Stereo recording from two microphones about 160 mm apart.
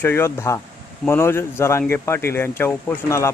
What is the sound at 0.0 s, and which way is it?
Speech, 15° left (ahead or behind).